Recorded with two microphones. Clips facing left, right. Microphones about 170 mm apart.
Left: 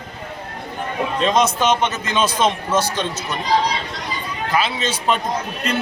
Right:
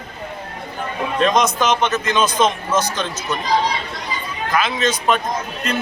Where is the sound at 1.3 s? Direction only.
30° left (ahead or behind).